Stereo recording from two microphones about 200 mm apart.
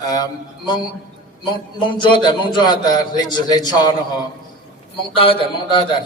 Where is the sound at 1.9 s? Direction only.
25° left (ahead or behind).